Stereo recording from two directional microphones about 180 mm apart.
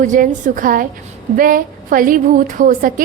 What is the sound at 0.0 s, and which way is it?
A woman's voice, 45° right (ahead or behind).